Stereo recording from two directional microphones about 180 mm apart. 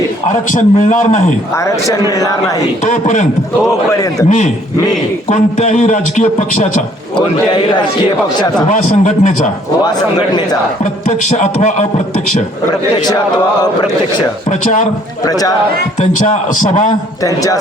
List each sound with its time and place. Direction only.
0.3 s a man's voice: 45° left (ahead or behind)
1.5 s a man's voice: 20° left (ahead or behind)
2.9 s a man's voice: 45° left (ahead or behind)
4.3 s a man's voice: 40° left (ahead or behind)
7.2 s a man's voice: 25° left (ahead or behind)
8.7 s a man's voice: 45° left (ahead or behind)
9.8 s a man's voice: 20° left (ahead or behind)
11.3 s a man's voice: 40° left (ahead or behind)
13.1 s a man's voice: 20° left (ahead or behind)
14.6 s a man's voice: 45° left (ahead or behind)
15.2 s a man's voice: 20° left (ahead or behind)
16.0 s a man's voice: 40° left (ahead or behind)
17.2 s a man's voice: 20° left (ahead or behind)